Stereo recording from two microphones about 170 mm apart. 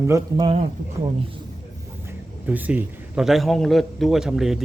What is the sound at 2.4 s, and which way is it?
A man's voice, 10° right (ahead or behind).